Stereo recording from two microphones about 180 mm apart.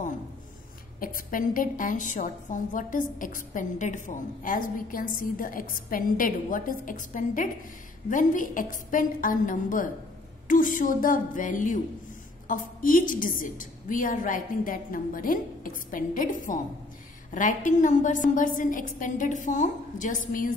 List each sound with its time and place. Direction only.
0.9 s a woman's voice: 50° left (ahead or behind)